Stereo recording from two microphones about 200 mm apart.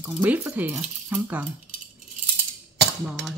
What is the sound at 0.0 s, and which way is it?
Speech, 10° right (ahead or behind).